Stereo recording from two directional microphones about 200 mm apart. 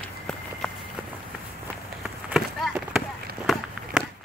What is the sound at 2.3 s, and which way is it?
Run, 5° right (ahead or behind).